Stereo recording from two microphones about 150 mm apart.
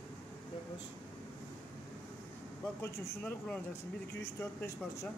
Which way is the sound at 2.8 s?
15° left (ahead or behind).